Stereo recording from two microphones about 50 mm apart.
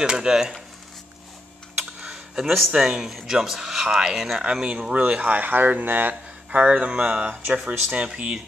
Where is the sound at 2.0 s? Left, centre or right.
Centre.